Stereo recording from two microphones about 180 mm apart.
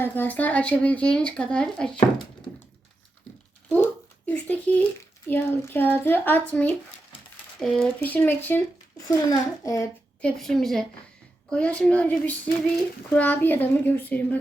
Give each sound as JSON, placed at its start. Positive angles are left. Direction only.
{"t": 0.0, "sound": "a child's voice", "side_deg": 10}
{"t": 4.3, "sound": "a child's voice", "side_deg": 10}
{"t": 10.2, "sound": "a woman's voice", "side_deg": 5}